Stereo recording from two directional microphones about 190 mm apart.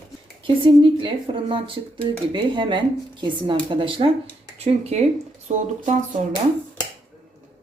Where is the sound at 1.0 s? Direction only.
25° right (ahead or behind).